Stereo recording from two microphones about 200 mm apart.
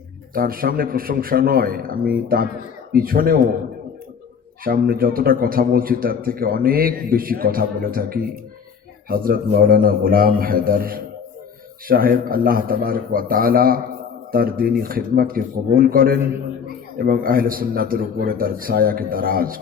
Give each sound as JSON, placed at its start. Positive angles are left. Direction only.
{"t": 0.3, "sound": "a man's voice", "side_deg": -45}
{"t": 4.6, "sound": "a man's voice", "side_deg": -45}